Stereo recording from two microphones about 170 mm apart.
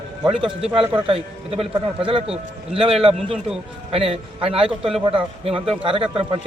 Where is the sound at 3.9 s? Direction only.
35° right (ahead or behind).